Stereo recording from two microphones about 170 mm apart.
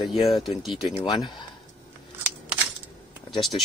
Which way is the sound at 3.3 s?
Centre (ahead or behind).